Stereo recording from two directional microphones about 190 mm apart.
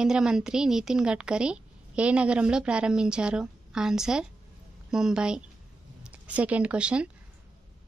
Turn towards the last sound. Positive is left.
turn(degrees=-5)  # may be behind; listen again after turning